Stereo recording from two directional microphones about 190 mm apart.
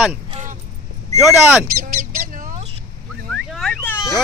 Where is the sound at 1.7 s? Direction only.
50° right (ahead or behind).